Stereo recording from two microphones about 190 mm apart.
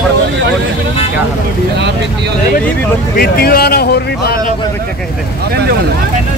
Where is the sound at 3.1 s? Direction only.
55° left (ahead or behind).